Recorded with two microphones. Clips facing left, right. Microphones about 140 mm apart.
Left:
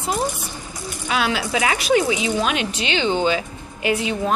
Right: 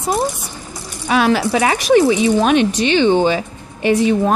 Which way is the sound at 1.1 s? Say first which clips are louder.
Right 7 dB; 45° right (ahead or behind).